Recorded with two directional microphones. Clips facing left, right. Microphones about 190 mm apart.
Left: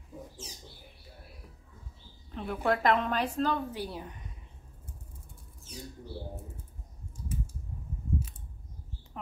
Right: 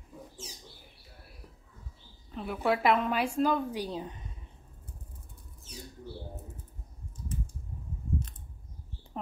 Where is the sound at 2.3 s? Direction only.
5° right (ahead or behind); by 4.2 s 20° right (ahead or behind).